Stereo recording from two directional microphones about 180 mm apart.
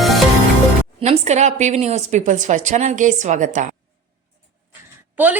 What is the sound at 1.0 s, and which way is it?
A woman's voice, 40° right (ahead or behind).